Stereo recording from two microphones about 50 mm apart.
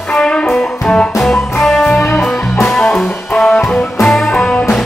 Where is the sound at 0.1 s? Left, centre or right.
Centre.